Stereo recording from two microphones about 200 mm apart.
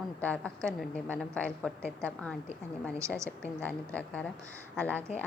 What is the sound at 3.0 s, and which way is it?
Speech, 15° right (ahead or behind).